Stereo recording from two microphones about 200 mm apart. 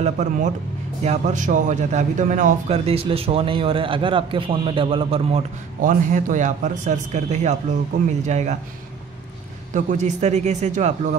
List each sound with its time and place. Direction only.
0.0 s a man's voice: 35° right (ahead or behind)
5.8 s speech: 40° right (ahead or behind)
9.8 s speech: 35° right (ahead or behind)